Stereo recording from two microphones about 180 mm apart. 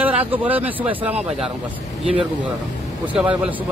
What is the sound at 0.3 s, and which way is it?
Speech, 10° right (ahead or behind).